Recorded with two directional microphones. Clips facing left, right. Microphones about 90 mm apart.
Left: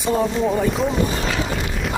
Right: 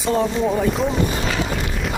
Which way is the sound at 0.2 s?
Centre (ahead or behind).